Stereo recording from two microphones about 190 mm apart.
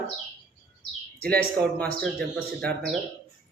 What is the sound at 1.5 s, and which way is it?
Speech, 5° left (ahead or behind).